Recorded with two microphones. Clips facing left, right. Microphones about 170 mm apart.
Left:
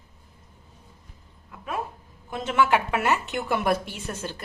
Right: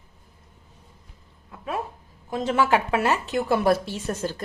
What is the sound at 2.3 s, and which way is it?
A woman's voice, 35° right (ahead or behind).